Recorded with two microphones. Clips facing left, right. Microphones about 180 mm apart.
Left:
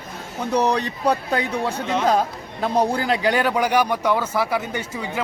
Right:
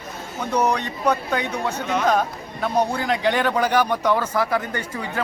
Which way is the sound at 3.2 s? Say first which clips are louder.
Right 1 dB; 10° left (ahead or behind).